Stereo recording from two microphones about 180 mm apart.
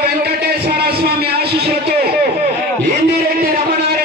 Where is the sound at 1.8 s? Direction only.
60° right (ahead or behind).